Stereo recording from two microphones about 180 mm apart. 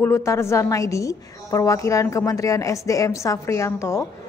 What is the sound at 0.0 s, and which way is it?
A woman's voice, 15° left (ahead or behind).